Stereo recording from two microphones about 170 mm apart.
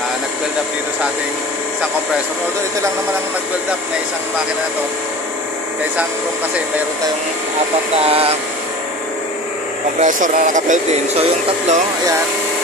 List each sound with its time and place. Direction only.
8.0 s speech: 35° right (ahead or behind)
9.9 s speech: 50° right (ahead or behind)